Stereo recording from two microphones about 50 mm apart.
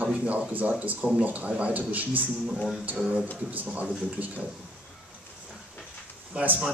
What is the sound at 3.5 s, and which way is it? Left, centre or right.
Speech, right.